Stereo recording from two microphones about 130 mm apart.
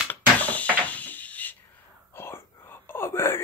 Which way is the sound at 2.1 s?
20° left (ahead or behind).